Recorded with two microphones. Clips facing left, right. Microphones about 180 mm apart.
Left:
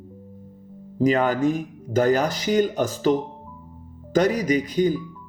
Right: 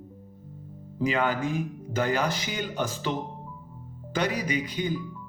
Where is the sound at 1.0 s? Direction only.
40° left (ahead or behind).